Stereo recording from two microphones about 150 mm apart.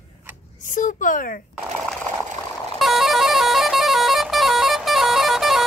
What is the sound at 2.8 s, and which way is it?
Vehicle horn, centre (ahead or behind).